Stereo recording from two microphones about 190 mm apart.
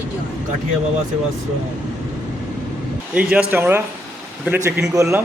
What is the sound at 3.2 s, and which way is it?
A man's voice, 5° right (ahead or behind).